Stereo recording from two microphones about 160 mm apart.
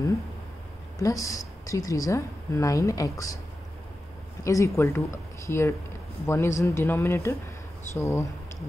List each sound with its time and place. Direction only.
1.0 s speech: 20° left (ahead or behind)
4.5 s speech: 20° left (ahead or behind)